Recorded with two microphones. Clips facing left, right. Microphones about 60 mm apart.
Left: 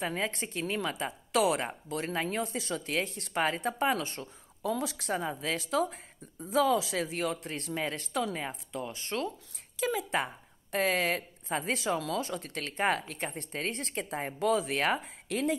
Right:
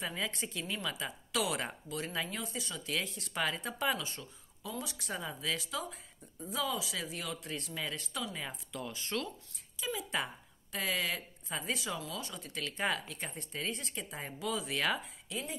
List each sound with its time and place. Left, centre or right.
0.0 s speech: left
5.2 s speech: left
9.8 s speech: left
10.1 s speech: left
15.2 s speech: left